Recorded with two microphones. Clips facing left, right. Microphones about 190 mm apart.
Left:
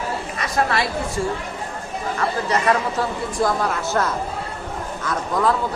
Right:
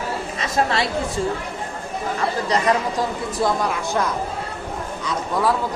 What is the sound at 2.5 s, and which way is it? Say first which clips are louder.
A woman's voice: even; 15° right (ahead or behind).